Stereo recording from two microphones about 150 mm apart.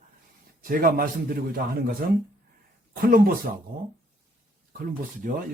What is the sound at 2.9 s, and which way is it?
Speech, 75° right (ahead or behind).